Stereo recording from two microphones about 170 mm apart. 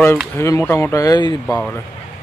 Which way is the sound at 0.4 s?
15° left (ahead or behind).